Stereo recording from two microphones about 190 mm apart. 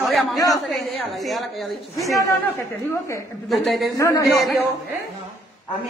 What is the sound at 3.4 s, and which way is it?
Speech, centre (ahead or behind).